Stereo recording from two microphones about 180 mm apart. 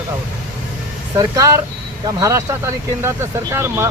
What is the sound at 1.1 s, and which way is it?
Speech, 20° right (ahead or behind).